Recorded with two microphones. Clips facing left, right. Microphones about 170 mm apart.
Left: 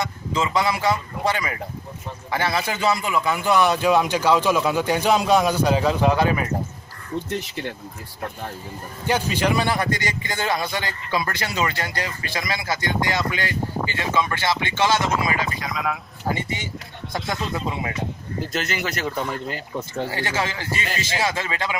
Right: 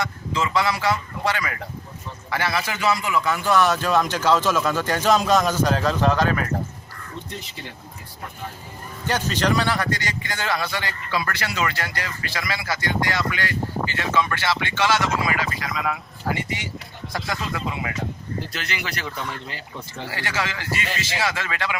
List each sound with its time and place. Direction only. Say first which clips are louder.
0.4 s a man's voice: left 1 dB; 20° left (ahead or behind)
7.2 s speech: left 8 dB; 70° left (ahead or behind)
9.0 s a man's voice: left 1 dB; 10° left (ahead or behind)
15.6 s speech: even; centre (ahead or behind)
16.3 s a man's voice: left 1 dB; 20° left (ahead or behind)
17.1 s speech: left 2 dB; centre (ahead or behind)
17.5 s a man's voice: left 2 dB; 25° left (ahead or behind)
18.5 s speech: left 5 dB; 45° left (ahead or behind)
20.1 s a man's voice: right 2 dB; 20° left (ahead or behind)